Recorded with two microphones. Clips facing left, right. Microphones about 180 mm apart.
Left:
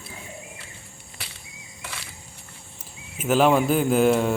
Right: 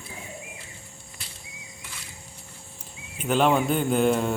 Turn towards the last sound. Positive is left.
turn(degrees=0)  # may be behind; listen again after turning